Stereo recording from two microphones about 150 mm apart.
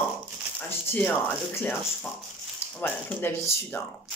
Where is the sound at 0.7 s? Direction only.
15° left (ahead or behind).